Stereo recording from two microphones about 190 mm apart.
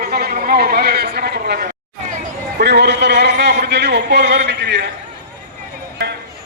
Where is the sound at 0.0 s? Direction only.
55° right (ahead or behind).